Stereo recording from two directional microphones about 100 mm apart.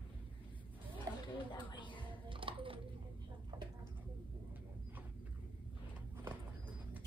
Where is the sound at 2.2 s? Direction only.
60° right (ahead or behind).